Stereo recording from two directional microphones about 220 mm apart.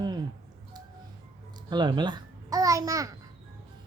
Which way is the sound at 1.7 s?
20° right (ahead or behind).